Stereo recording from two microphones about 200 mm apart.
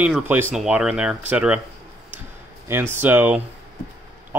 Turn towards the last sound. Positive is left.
turn(degrees=-10)  # may be behind; listen again after turning